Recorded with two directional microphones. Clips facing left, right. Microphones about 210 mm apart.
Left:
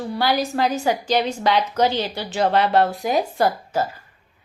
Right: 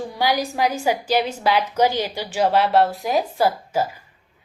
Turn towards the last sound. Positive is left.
turn(degrees=-10)  # may be behind; listen again after turning